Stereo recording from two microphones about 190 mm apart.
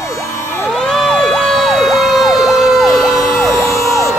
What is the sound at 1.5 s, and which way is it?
Emergency vehicle, centre (ahead or behind).